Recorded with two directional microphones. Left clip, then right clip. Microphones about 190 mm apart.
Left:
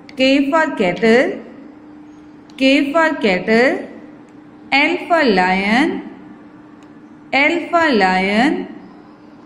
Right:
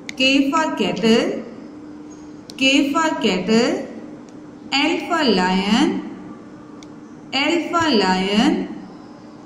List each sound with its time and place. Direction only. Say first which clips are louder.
0.2 s a woman's voice: left 3 dB; 15° left (ahead or behind)
2.5 s a woman's voice: left 3 dB; 15° left (ahead or behind)
7.2 s a woman's voice: left 5 dB; 15° left (ahead or behind)